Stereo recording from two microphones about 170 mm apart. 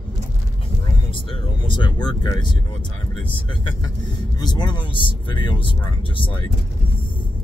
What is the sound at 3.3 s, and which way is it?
Speech, 30° left (ahead or behind).